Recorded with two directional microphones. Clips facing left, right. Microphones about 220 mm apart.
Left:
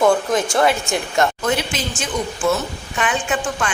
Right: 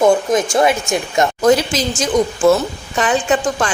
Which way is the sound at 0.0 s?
20° right (ahead or behind).